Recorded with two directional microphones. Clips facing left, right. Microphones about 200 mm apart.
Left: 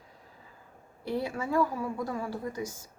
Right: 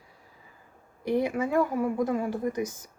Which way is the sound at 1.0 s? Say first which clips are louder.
Right 6 dB; 15° right (ahead or behind).